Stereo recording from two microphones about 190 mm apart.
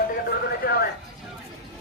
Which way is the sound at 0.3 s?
55° left (ahead or behind).